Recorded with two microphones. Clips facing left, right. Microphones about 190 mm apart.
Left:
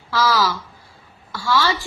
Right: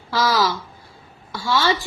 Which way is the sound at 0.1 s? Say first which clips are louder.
Even; 20° right (ahead or behind).